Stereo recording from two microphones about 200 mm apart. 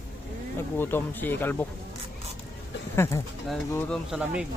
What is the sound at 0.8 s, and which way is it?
Speech, 10° left (ahead or behind).